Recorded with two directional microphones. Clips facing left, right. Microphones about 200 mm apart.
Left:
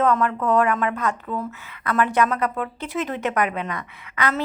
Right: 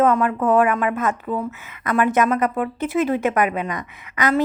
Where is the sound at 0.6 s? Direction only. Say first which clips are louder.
Right 2 dB; 10° right (ahead or behind).